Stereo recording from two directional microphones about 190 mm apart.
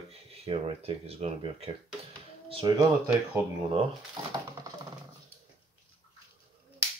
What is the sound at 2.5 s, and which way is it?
Speech, 20° right (ahead or behind).